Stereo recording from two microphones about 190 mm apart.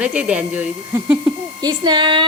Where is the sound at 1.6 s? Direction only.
20° right (ahead or behind).